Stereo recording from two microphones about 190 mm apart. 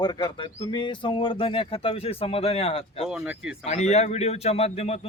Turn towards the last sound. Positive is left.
turn(degrees=30)  # may be behind; listen again after turning